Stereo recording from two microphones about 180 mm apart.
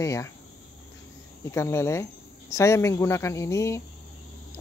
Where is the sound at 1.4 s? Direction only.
15° left (ahead or behind).